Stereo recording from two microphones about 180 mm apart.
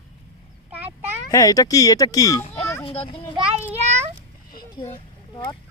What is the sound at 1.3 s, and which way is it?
Speech, 20° left (ahead or behind).